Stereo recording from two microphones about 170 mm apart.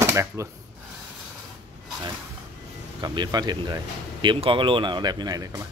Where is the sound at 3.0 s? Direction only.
25° right (ahead or behind).